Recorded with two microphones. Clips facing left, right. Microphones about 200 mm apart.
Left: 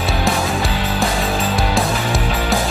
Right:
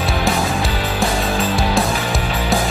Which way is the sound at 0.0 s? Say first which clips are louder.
Even; centre (ahead or behind).